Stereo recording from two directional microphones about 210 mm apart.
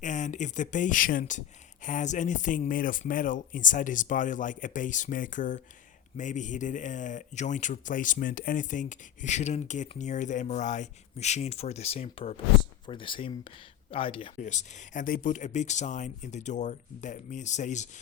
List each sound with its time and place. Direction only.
0.0 s speech: 35° left (ahead or behind)